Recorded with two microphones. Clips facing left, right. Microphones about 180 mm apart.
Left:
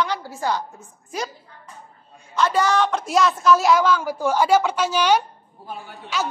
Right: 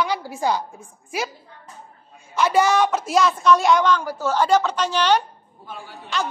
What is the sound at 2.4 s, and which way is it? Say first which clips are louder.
Speech: right 2 dB; 10° right (ahead or behind).